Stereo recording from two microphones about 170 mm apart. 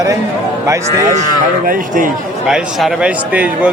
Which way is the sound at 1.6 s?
55° right (ahead or behind).